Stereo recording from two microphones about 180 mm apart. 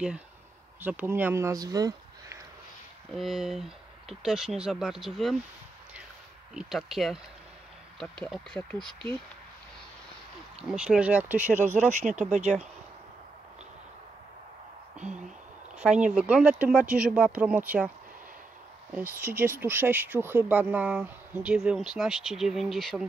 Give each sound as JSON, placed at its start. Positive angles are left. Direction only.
{"t": 0.7, "sound": "speech", "side_deg": -10}
{"t": 3.1, "sound": "speech", "side_deg": 0}
{"t": 6.5, "sound": "speech", "side_deg": -5}
{"t": 8.3, "sound": "speech", "side_deg": 5}
{"t": 10.7, "sound": "speech", "side_deg": -5}
{"t": 11.9, "sound": "speech", "side_deg": -40}
{"t": 16.1, "sound": "speech", "side_deg": -5}
{"t": 19.2, "sound": "speech", "side_deg": -10}